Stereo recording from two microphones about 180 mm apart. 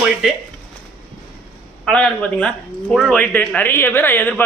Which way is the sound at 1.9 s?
5° left (ahead or behind).